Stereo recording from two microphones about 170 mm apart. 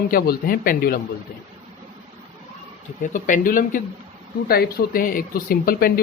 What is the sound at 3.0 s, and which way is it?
Speech, 50° left (ahead or behind).